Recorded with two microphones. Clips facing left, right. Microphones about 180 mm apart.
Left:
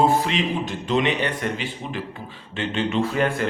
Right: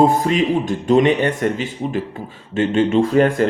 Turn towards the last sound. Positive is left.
turn(degrees=-45)  # may be behind; listen again after turning